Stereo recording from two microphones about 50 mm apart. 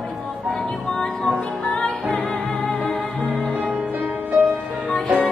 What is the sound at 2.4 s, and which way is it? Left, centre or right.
Music, centre.